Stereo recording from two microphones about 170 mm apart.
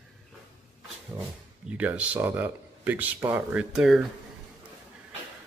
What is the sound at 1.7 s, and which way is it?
Speech, 5° right (ahead or behind).